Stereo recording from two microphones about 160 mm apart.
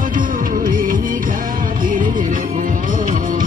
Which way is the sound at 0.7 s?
60° right (ahead or behind).